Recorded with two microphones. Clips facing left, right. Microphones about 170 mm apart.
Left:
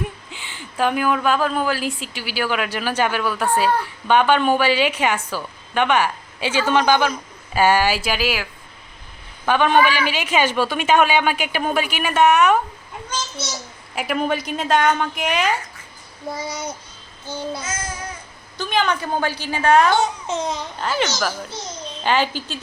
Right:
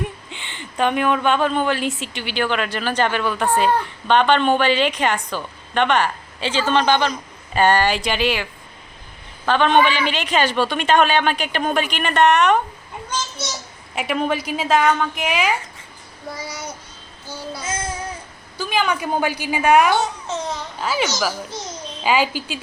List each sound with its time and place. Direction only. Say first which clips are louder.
0.3 s a woman's voice: right 1 dB; 5° left (ahead or behind)
9.5 s a woman's voice: even; 10° left (ahead or behind)
13.9 s a woman's voice: even; centre (ahead or behind)
16.3 s a child's voice: left 3 dB; 20° left (ahead or behind)
18.5 s a woman's voice: even; 5° right (ahead or behind)
20.2 s a woman's voice: left 2 dB; 15° left (ahead or behind)
20.7 s a woman's voice: right 2 dB; 5° right (ahead or behind)